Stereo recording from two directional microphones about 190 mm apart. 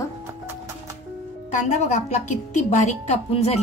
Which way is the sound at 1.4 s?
40° left (ahead or behind).